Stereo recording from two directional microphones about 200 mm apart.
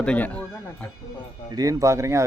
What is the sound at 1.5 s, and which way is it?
Speech, 20° right (ahead or behind).